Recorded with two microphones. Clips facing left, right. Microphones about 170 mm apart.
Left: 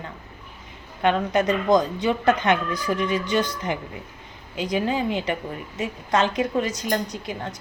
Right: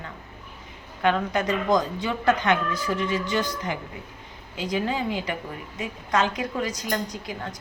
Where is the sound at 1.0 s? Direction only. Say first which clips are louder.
Left 3 dB; 20° left (ahead or behind).